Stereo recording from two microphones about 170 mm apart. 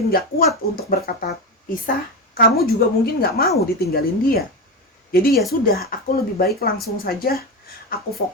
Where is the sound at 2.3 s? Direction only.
60° left (ahead or behind).